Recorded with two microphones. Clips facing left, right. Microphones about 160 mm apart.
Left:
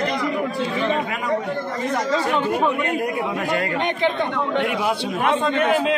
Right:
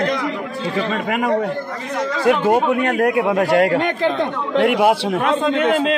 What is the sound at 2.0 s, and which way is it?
Speech, 90° right.